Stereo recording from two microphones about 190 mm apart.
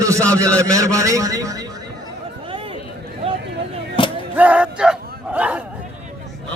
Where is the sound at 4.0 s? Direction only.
25° left (ahead or behind).